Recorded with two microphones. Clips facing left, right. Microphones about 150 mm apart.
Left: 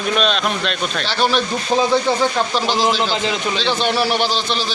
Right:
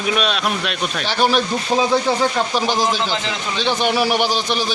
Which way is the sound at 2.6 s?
15° right (ahead or behind).